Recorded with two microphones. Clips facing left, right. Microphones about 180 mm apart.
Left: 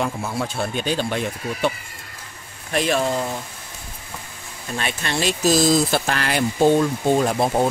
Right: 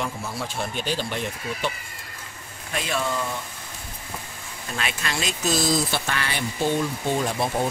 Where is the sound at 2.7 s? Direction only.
35° left (ahead or behind).